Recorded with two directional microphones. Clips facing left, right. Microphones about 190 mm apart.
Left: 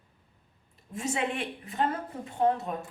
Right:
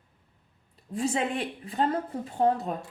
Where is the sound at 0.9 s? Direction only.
35° right (ahead or behind).